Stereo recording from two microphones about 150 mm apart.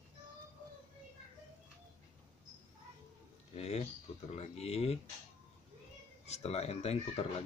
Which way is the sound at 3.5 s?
45° left (ahead or behind).